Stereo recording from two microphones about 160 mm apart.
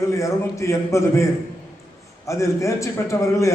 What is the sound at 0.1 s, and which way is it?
A man's voice, 20° left (ahead or behind).